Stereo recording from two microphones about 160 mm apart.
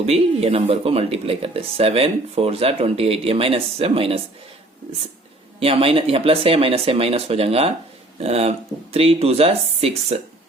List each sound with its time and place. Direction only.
0.0 s speech: 40° right (ahead or behind)
5.5 s speech: 35° right (ahead or behind)